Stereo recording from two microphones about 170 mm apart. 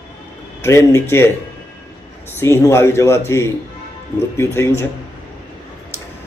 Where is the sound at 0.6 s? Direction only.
15° left (ahead or behind).